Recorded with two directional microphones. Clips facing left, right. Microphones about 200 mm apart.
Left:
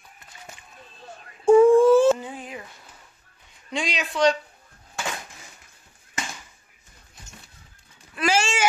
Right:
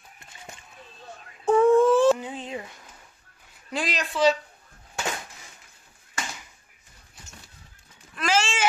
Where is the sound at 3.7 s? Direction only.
Centre (ahead or behind).